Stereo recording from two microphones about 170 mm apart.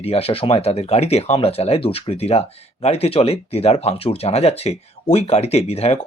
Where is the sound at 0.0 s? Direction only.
35° left (ahead or behind).